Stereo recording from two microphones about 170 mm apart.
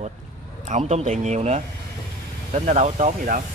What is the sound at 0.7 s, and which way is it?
Speech, 40° right (ahead or behind).